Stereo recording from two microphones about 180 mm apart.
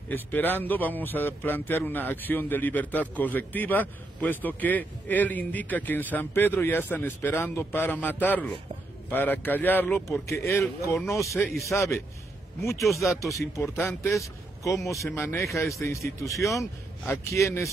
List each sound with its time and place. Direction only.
0.1 s a man's voice: 10° left (ahead or behind)
13.2 s a man's voice: 15° left (ahead or behind)